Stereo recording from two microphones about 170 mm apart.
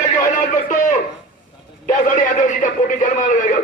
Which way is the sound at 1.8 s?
50° left (ahead or behind).